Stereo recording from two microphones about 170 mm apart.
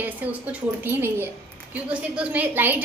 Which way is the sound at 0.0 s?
10° right (ahead or behind).